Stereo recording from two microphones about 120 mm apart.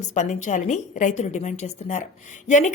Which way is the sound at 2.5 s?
90° left.